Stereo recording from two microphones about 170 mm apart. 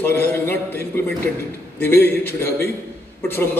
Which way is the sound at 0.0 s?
10° left (ahead or behind).